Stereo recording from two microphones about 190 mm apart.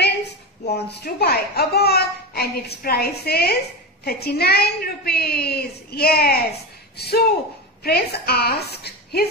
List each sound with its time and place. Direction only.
0.8 s a child's voice: 60° left (ahead or behind)